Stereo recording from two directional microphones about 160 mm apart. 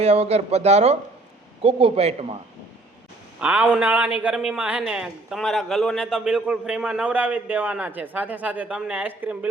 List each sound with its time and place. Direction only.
0.0 s a man's voice: 40° right (ahead or behind)
3.4 s speech: 5° right (ahead or behind)